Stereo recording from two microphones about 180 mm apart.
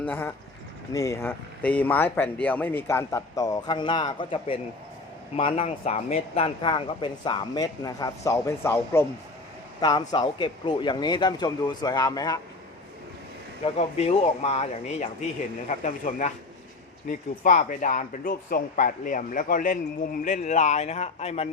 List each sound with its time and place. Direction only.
0.0 s speech: 10° left (ahead or behind)
13.7 s speech: 35° left (ahead or behind)